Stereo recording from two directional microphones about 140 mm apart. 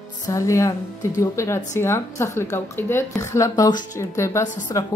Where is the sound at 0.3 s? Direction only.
25° left (ahead or behind).